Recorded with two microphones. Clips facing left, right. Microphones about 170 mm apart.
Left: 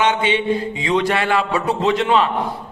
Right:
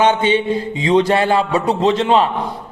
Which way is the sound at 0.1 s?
30° right (ahead or behind).